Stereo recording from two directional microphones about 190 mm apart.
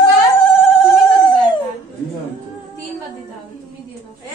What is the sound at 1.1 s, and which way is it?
Dog, 20° left (ahead or behind).